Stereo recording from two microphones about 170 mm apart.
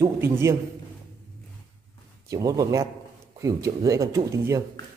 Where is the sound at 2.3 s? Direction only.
20° right (ahead or behind).